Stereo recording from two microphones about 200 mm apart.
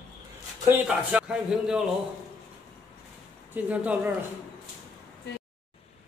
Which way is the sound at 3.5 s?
5° right (ahead or behind).